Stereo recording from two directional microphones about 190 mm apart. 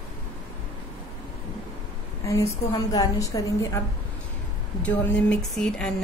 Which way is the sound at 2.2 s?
15° left (ahead or behind).